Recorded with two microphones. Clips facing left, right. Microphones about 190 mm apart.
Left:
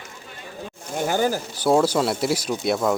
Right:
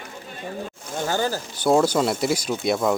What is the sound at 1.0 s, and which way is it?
Speech, 15° left (ahead or behind).